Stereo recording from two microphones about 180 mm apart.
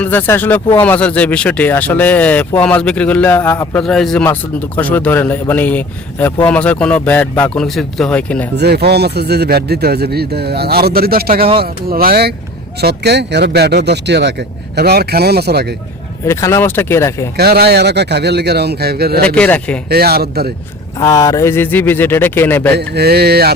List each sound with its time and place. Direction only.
0.0 s a man's voice: 10° left (ahead or behind)
8.5 s speech: 65° right (ahead or behind)
16.2 s a man's voice: 15° left (ahead or behind)
17.3 s speech: 60° right (ahead or behind)
19.2 s a man's voice: 5° left (ahead or behind)
19.9 s speech: 60° right (ahead or behind)
21.0 s a man's voice: 20° left (ahead or behind)
23.0 s speech: 60° right (ahead or behind)